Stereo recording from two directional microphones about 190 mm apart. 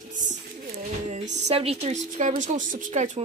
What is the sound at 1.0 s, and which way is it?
A woman's voice, 35° right (ahead or behind).